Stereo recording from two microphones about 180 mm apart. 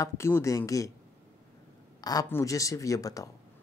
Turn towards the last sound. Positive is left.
turn(degrees=20)  # may be behind; listen again after turning